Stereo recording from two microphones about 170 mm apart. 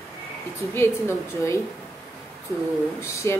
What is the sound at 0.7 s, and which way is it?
Speech, 15° left (ahead or behind).